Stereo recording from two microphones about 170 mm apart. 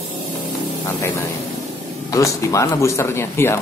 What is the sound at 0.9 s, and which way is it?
Speech, 15° left (ahead or behind).